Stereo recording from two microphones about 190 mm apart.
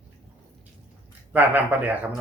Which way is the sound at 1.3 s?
10° right (ahead or behind).